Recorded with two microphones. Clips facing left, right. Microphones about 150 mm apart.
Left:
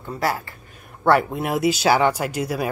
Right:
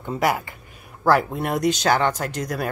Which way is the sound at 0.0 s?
20° right (ahead or behind).